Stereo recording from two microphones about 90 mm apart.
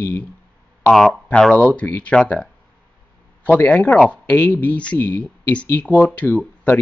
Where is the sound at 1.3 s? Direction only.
15° left (ahead or behind).